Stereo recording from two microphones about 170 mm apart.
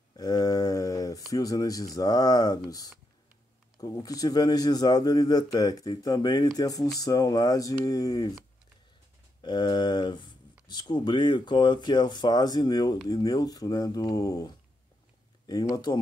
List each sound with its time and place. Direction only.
0.1 s a sound: 20° left (ahead or behind)
1.3 s speech: 20° left (ahead or behind)
9.4 s speech: 25° left (ahead or behind)